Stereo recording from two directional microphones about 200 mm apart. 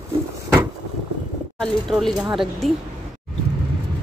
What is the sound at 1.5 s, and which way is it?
Speech, centre (ahead or behind).